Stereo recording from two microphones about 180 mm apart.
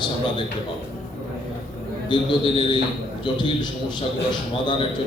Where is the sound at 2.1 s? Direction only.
25° left (ahead or behind).